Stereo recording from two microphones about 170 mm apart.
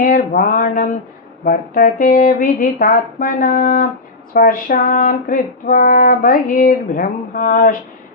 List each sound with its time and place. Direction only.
0.0 s music: 55° left (ahead or behind)